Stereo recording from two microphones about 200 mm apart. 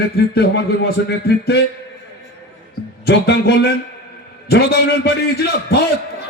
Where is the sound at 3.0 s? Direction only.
55° left (ahead or behind).